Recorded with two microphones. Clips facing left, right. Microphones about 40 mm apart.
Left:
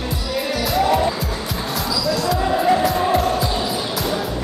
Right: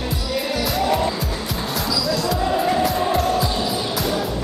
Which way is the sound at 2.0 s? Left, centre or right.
Centre.